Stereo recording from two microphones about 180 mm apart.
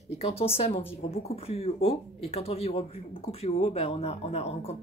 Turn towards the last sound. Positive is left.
turn(degrees=35)  # may be behind; listen again after turning